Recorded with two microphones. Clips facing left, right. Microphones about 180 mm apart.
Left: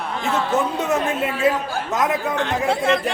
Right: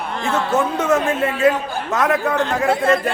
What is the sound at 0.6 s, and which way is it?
A man's voice, 20° left (ahead or behind).